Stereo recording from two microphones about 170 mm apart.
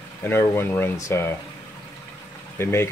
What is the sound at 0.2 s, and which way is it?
Speech, 15° left (ahead or behind).